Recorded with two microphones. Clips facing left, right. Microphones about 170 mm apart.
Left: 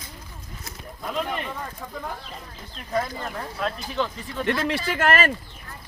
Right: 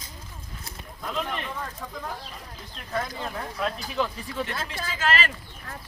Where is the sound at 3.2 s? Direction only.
Centre (ahead or behind).